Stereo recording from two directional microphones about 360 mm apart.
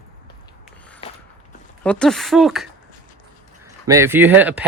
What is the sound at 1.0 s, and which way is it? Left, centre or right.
Walk, centre.